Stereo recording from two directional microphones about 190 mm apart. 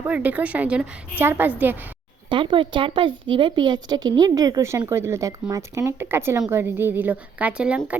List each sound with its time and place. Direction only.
0.0 s a woman's voice: 10° right (ahead or behind)
2.3 s a woman's voice: 25° right (ahead or behind); by 7.9 s 5° right (ahead or behind)